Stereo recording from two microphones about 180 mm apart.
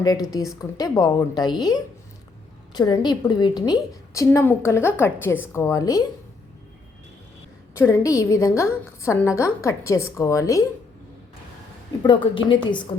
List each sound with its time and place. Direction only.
0.6 s a woman's voice: 20° left (ahead or behind)
7.8 s a woman's voice: 15° left (ahead or behind)
12.0 s speech: 25° left (ahead or behind)